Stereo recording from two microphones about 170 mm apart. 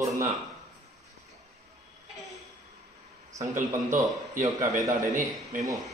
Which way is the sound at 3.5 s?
50° right (ahead or behind).